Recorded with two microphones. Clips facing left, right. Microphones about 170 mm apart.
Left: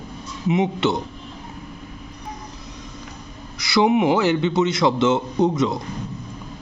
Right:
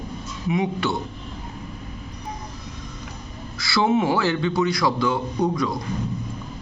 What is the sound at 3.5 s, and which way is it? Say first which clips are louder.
A man's voice: left 3 dB; 20° left (ahead or behind).